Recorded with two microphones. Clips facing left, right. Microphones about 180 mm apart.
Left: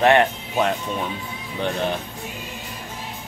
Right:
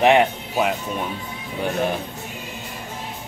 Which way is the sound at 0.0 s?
15° right (ahead or behind).